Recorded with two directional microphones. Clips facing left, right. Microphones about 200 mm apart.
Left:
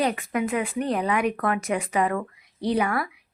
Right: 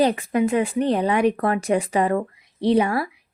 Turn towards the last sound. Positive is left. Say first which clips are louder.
# right 5 dB
turn(degrees=-30)  # may be behind; listen again after turning